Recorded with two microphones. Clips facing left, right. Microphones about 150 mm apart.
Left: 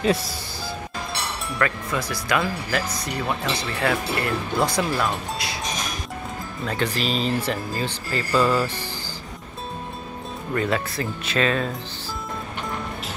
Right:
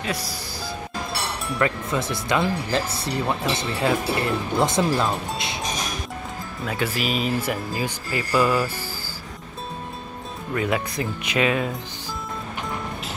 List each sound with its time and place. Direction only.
0.0 s speech: 25° left (ahead or behind)
1.6 s speech: 25° right (ahead or behind)
6.6 s speech: 5° right (ahead or behind)
10.5 s speech: 10° right (ahead or behind)